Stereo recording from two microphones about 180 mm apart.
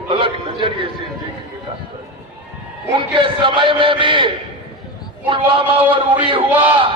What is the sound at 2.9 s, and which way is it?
A man's voice, 25° right (ahead or behind).